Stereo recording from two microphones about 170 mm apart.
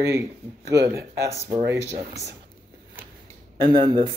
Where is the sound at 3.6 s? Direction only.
25° right (ahead or behind).